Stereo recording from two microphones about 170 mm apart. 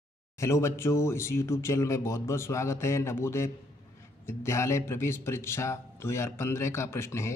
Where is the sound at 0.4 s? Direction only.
15° left (ahead or behind).